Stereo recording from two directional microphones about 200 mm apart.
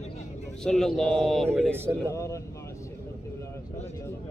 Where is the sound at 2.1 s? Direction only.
15° left (ahead or behind).